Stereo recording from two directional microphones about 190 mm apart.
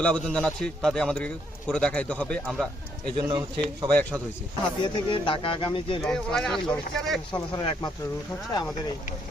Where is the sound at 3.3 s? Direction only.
25° right (ahead or behind).